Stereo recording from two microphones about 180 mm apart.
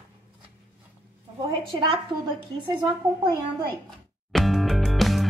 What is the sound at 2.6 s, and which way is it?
Speech, 25° right (ahead or behind).